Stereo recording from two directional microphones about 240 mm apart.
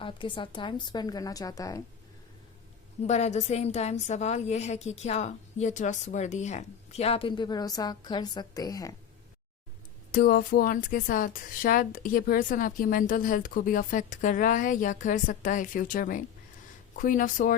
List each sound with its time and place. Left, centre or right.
0.0 s a woman's voice: left
3.0 s a woman's voice: left
10.1 s speech: left